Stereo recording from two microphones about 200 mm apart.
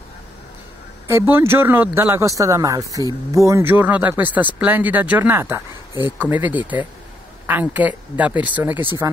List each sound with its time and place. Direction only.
1.0 s speech: 10° right (ahead or behind)